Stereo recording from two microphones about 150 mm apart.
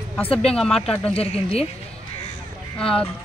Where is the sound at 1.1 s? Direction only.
40° left (ahead or behind).